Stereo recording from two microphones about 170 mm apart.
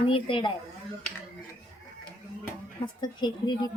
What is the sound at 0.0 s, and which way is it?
Speech, 30° left (ahead or behind).